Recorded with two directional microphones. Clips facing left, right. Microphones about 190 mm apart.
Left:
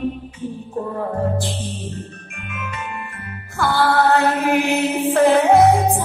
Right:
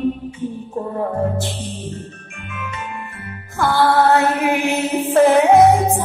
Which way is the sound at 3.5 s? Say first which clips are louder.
Right 2 dB; 15° right (ahead or behind).